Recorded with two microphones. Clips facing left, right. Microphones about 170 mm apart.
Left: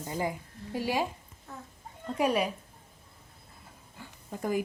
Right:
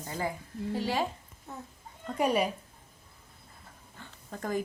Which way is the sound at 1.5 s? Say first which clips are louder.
Right 2 dB; 20° right (ahead or behind).